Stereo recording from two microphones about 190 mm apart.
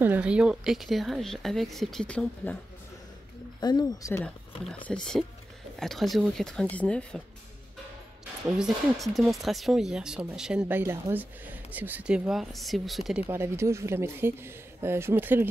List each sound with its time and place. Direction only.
0.0 s speech: 5° right (ahead or behind)
3.6 s speech: 20° left (ahead or behind)
4.8 s speech: 5° left (ahead or behind)
8.5 s speech: 5° right (ahead or behind)
13.3 s speech: 15° right (ahead or behind)